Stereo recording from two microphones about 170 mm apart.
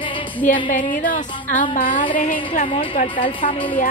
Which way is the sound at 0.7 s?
50° left (ahead or behind).